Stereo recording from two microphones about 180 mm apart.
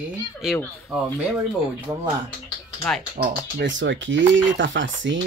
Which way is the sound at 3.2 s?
75° right (ahead or behind).